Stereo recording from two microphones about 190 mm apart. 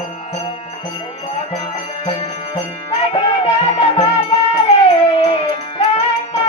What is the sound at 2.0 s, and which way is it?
Music, 30° left (ahead or behind).